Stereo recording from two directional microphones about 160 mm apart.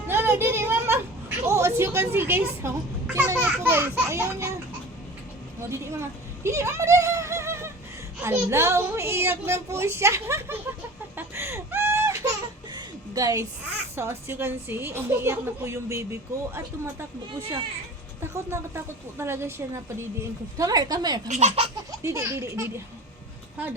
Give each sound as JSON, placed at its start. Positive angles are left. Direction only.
{"t": 0.1, "sound": "a sound", "side_deg": -15}
{"t": 1.4, "sound": "a woman's voice", "side_deg": -15}
{"t": 5.5, "sound": "a child's voice", "side_deg": -15}
{"t": 11.2, "sound": "a sound", "side_deg": -15}
{"t": 13.1, "sound": "a woman's voice", "side_deg": -20}
{"t": 18.2, "sound": "a child's voice", "side_deg": -15}
{"t": 21.2, "sound": "speech", "side_deg": -45}
{"t": 22.0, "sound": "a child's voice", "side_deg": -20}